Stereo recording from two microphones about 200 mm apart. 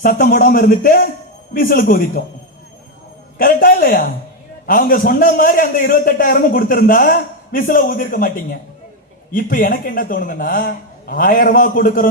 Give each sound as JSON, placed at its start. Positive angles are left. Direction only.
{"t": 0.0, "sound": "a man's voice", "side_deg": 45}
{"t": 3.3, "sound": "a man's voice", "side_deg": 45}
{"t": 9.3, "sound": "a man's voice", "side_deg": 45}